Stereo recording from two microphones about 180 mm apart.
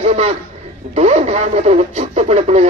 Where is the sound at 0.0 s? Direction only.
35° right (ahead or behind).